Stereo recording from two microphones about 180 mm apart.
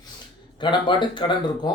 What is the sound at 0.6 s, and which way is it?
Speech, 25° left (ahead or behind).